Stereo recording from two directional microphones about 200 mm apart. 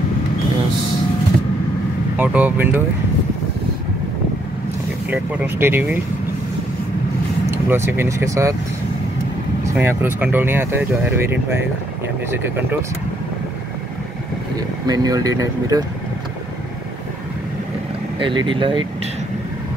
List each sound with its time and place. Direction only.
2.1 s speech: 10° right (ahead or behind)
5.1 s speech: 10° right (ahead or behind)
7.5 s speech: 10° right (ahead or behind)
9.8 s speech: 10° right (ahead or behind)
14.9 s speech: 20° right (ahead or behind)
18.2 s speech: 25° right (ahead or behind)